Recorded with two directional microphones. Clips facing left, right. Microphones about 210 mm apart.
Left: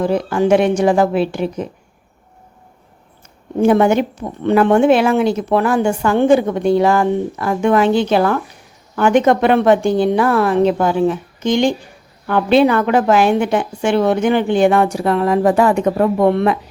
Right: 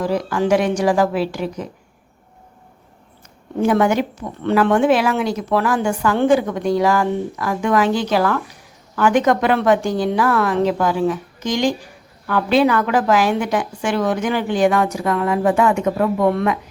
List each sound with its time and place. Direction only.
0.0 s a woman's voice: 25° left (ahead or behind)
3.6 s a woman's voice: 25° left (ahead or behind)